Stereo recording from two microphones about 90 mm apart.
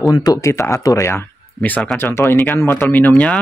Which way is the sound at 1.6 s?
20° left (ahead or behind).